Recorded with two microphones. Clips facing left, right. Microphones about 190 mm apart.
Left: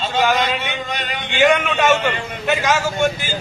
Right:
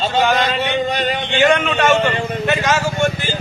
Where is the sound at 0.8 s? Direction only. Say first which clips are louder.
Right 7 dB; 35° right (ahead or behind).